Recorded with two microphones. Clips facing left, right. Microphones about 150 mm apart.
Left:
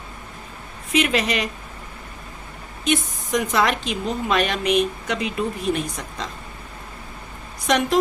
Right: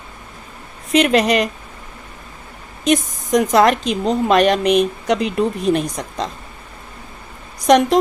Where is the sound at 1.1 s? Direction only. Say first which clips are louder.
Right 8 dB; 45° right (ahead or behind).